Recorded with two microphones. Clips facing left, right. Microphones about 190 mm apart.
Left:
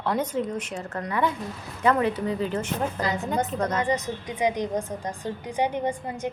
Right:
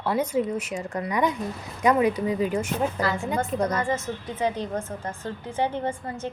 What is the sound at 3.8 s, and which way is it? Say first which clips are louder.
A woman's voice: left 1 dB; 15° left (ahead or behind).